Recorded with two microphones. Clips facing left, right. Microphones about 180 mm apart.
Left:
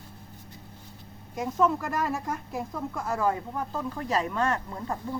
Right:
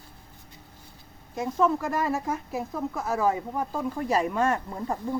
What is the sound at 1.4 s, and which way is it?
Speech, centre (ahead or behind).